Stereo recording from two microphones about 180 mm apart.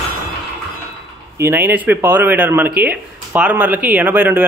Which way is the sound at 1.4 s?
10° right (ahead or behind).